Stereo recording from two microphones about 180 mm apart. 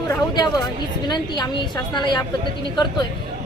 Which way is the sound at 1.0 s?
25° left (ahead or behind).